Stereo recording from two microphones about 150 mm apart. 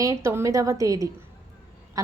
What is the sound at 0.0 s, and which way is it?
A woman's voice, 20° right (ahead or behind).